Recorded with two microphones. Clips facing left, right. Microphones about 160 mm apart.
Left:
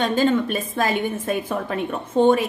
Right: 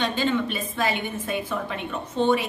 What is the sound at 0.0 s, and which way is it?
A woman's voice, 45° left (ahead or behind).